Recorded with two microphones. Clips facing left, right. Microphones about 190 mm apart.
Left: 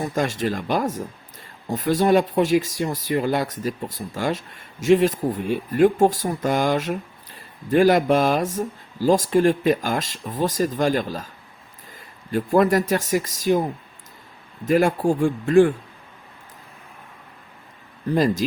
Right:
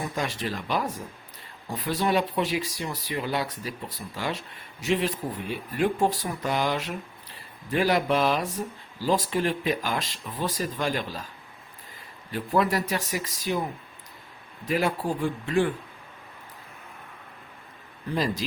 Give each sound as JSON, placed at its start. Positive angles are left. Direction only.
{"t": 0.0, "sound": "speech", "side_deg": 45}
{"t": 12.3, "sound": "speech", "side_deg": 45}
{"t": 14.6, "sound": "speech", "side_deg": 45}
{"t": 18.1, "sound": "speech", "side_deg": 45}